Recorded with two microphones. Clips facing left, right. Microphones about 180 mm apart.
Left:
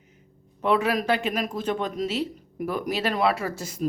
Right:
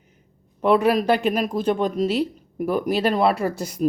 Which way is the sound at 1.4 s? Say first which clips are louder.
Right 6 dB; 35° right (ahead or behind).